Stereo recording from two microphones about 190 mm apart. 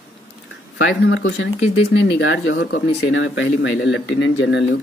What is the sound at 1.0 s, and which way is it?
Speech, 65° left (ahead or behind).